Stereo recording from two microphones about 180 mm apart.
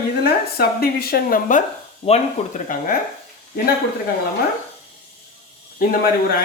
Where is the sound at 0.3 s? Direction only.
55° left (ahead or behind).